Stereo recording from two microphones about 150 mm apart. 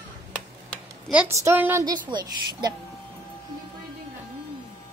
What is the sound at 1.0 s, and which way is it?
Speech, 10° right (ahead or behind).